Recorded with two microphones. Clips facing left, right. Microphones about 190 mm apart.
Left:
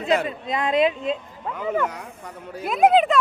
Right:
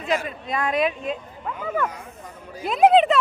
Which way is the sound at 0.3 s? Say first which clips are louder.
Left 2 dB; 20° left (ahead or behind).